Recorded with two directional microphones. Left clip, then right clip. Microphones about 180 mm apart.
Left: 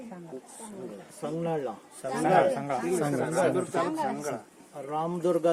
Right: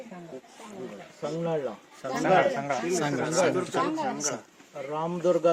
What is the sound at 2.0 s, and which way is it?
Speech, 50° left (ahead or behind).